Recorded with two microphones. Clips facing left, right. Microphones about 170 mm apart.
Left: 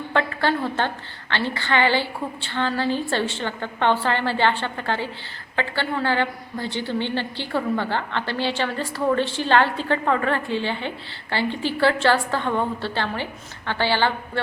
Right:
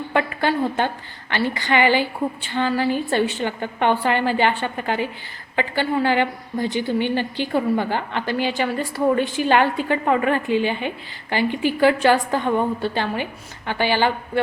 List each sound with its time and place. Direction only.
0.1 s a woman's voice: 15° right (ahead or behind)